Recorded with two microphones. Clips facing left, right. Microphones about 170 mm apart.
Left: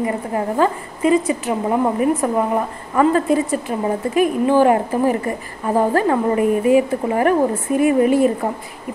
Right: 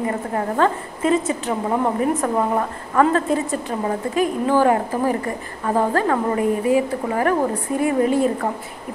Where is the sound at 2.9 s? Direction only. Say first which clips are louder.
Left 2 dB; 15° left (ahead or behind).